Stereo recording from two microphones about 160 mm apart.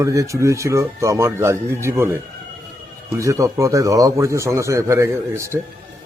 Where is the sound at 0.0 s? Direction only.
20° right (ahead or behind).